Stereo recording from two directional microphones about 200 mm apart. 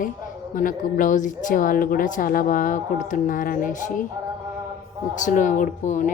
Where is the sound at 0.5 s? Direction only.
45° left (ahead or behind).